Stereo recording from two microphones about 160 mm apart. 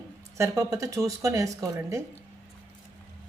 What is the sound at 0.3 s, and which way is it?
Speech, 20° right (ahead or behind).